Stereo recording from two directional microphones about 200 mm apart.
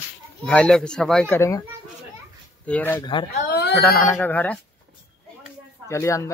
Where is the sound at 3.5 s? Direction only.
50° left (ahead or behind).